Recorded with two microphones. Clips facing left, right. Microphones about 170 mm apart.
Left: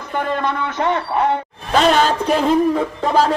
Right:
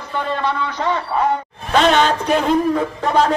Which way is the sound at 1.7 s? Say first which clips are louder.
Even; 5° left (ahead or behind).